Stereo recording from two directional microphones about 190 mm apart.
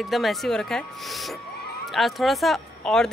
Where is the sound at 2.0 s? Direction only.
Centre (ahead or behind).